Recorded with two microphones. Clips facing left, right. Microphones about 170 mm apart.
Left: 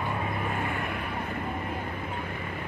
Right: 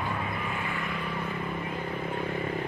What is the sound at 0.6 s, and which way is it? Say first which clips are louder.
Vehicle: left 2 dB; 55° left (ahead or behind).